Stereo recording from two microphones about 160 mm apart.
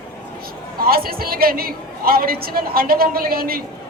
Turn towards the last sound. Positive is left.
turn(degrees=-70)  # may be behind; listen again after turning